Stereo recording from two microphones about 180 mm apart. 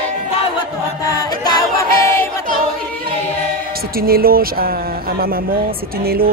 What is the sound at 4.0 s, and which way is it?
Speech, 55° right (ahead or behind).